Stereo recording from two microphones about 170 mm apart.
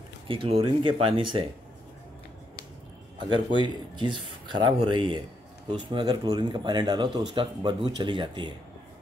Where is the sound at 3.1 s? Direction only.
25° right (ahead or behind).